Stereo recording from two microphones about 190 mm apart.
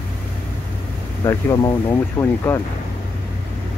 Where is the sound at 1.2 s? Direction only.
20° left (ahead or behind).